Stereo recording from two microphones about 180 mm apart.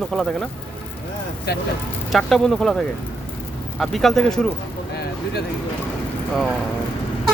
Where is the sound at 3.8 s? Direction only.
Centre (ahead or behind).